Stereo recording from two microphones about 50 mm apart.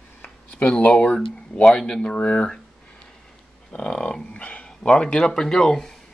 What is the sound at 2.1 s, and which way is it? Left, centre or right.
Speech, left.